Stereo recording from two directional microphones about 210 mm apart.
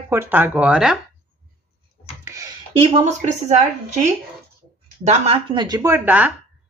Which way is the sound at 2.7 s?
30° right (ahead or behind).